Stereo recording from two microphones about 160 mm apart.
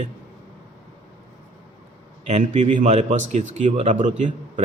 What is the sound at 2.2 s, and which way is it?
Speech, 45° right (ahead or behind).